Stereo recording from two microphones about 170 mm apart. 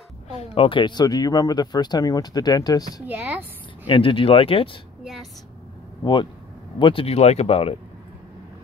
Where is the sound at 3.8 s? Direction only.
30° left (ahead or behind).